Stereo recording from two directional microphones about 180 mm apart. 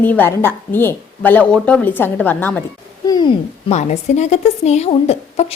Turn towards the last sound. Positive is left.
turn(degrees=35)  # may be behind; listen again after turning